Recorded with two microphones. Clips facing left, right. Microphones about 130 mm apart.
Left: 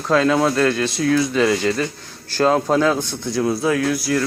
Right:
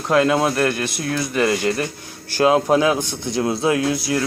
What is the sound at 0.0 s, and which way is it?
A man's voice, 15° right (ahead or behind).